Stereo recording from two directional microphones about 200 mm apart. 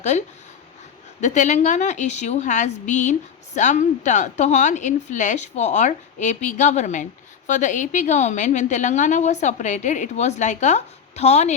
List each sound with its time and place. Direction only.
1.2 s a woman's voice: 35° left (ahead or behind)